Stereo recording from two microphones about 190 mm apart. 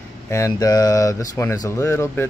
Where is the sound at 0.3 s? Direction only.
15° left (ahead or behind).